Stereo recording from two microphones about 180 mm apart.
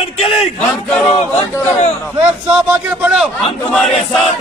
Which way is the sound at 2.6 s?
10° right (ahead or behind).